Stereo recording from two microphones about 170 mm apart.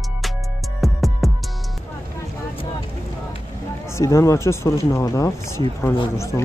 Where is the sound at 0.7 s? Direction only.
Centre (ahead or behind).